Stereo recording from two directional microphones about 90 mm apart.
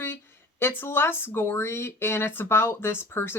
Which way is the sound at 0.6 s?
25° left (ahead or behind).